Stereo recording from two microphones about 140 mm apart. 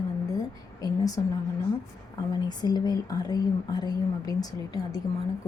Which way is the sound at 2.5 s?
30° left (ahead or behind).